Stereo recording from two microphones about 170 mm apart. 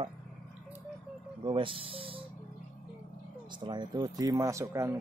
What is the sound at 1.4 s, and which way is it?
Speech, 30° right (ahead or behind).